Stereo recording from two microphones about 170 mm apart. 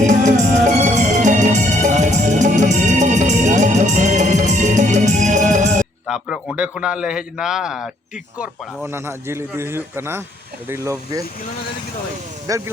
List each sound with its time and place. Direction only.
0.0 s music: 45° right (ahead or behind)
6.1 s a man's voice: centre (ahead or behind)
8.4 s speech: 15° right (ahead or behind)
12.5 s speech: 20° right (ahead or behind)